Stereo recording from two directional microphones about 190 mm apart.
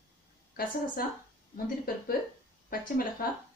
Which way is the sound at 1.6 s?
50° left (ahead or behind).